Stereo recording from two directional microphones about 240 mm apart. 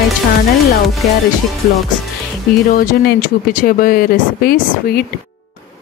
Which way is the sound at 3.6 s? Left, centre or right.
Left.